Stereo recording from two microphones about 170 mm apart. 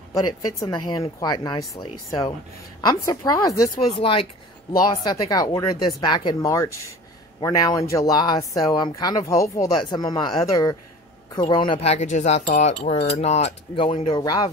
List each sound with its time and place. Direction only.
0.1 s speech: 20° left (ahead or behind)